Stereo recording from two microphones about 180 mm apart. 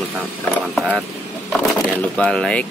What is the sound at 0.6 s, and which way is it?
Speech, centre (ahead or behind).